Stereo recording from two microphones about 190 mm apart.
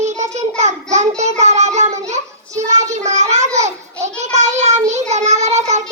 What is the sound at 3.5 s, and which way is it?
Child singing, 35° right (ahead or behind).